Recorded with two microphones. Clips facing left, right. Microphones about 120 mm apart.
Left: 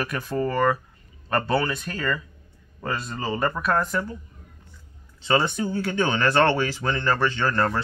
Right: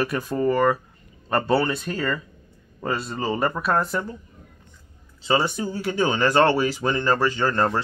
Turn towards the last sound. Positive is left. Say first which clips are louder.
# right 2 dB
turn(degrees=-20)  # may be behind; listen again after turning